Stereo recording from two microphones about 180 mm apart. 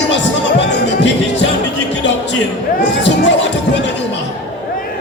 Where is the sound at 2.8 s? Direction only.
80° left.